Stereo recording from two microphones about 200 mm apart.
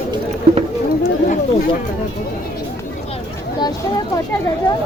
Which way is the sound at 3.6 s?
20° left (ahead or behind).